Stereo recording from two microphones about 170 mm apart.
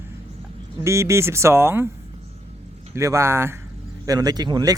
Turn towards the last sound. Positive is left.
turn(degrees=-25)  # may be behind; listen again after turning